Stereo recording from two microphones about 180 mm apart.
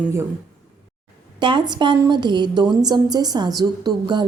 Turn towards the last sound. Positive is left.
turn(degrees=-25)  # may be behind; listen again after turning